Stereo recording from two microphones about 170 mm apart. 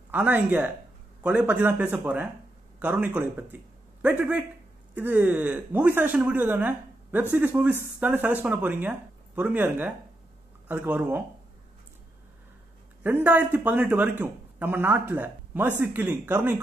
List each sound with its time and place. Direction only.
0.1 s speech: 10° right (ahead or behind)
13.0 s speech: 10° right (ahead or behind)